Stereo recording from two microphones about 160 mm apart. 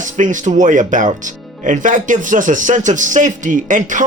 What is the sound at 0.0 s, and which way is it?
Speech, 50° right (ahead or behind).